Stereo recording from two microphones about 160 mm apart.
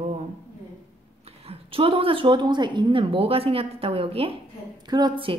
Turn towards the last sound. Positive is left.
turn(degrees=-30)  # may be behind; listen again after turning